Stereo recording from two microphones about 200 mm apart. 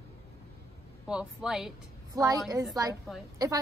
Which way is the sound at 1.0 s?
5° right (ahead or behind).